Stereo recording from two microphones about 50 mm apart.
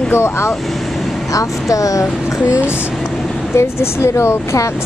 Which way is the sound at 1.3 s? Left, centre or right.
Left.